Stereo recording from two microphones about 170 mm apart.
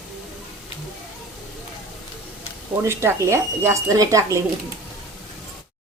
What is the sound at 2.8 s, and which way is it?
Speech, 15° right (ahead or behind).